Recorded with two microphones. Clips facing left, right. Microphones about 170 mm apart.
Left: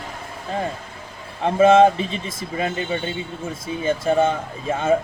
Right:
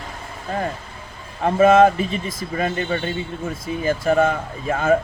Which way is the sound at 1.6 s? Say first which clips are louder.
Even; 25° left (ahead or behind).